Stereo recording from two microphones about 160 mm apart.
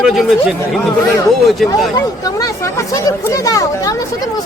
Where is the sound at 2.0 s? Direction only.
20° left (ahead or behind).